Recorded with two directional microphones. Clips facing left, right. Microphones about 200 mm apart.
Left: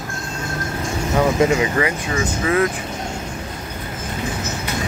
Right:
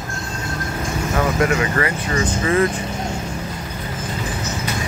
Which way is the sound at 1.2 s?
20° left (ahead or behind).